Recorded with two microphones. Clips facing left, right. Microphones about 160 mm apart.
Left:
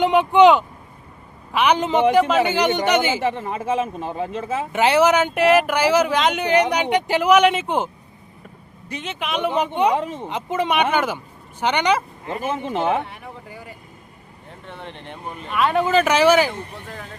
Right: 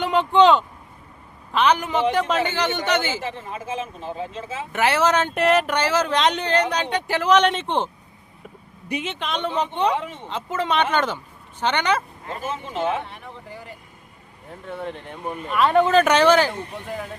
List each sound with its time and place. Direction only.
0.0 s speech: 15° left (ahead or behind)
2.2 s speech: centre (ahead or behind)
2.5 s speech: 15° left (ahead or behind)
3.2 s speech: 70° left (ahead or behind)
4.7 s speech: 15° left (ahead or behind)
9.0 s speech: 5° left (ahead or behind)
10.0 s speech: 40° left (ahead or behind)
10.2 s speech: 15° left (ahead or behind)
12.4 s speech: 55° left (ahead or behind)
14.7 s speech: 5° right (ahead or behind)